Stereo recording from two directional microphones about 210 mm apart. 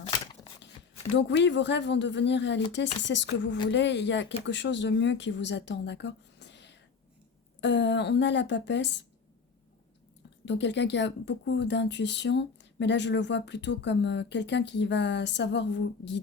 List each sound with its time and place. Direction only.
0.1 s shuffling cards: 20° left (ahead or behind)
1.1 s speech: 55° left (ahead or behind)
10.4 s speech: 55° left (ahead or behind)